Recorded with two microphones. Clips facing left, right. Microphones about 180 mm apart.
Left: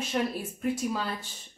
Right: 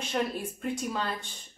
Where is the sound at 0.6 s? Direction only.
5° left (ahead or behind).